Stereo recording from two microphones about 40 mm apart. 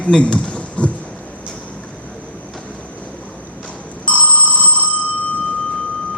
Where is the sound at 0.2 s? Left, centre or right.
Left.